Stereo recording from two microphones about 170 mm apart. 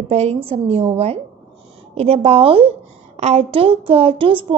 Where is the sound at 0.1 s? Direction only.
40° right (ahead or behind).